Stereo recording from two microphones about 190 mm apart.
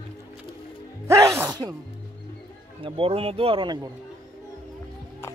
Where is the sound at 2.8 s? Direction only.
30° right (ahead or behind).